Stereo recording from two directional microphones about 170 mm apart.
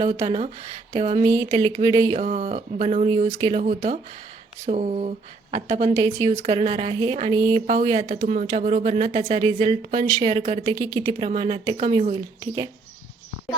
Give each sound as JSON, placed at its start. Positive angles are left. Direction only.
{"t": 0.0, "sound": "speech", "side_deg": -35}
{"t": 1.2, "sound": "a woman's voice", "side_deg": -20}
{"t": 2.1, "sound": "speech", "side_deg": -40}
{"t": 5.9, "sound": "speech", "side_deg": -15}
{"t": 6.2, "sound": "speech", "side_deg": -35}
{"t": 7.7, "sound": "speech", "side_deg": -45}
{"t": 9.9, "sound": "a woman's voice", "side_deg": -25}
{"t": 11.2, "sound": "a woman's voice", "side_deg": -35}